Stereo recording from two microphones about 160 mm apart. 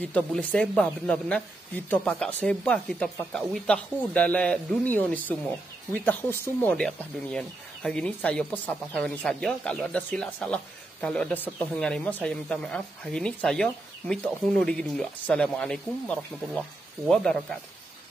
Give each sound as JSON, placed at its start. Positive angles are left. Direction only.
{"t": 0.1, "sound": "speech", "side_deg": 10}